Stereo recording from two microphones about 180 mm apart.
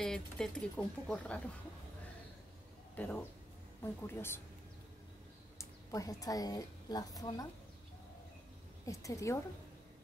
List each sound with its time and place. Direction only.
0.0 s speech: 5° left (ahead or behind)
3.0 s a woman's voice: 10° left (ahead or behind)
5.6 s a woman's voice: 20° left (ahead or behind)
8.8 s a woman's voice: 15° left (ahead or behind)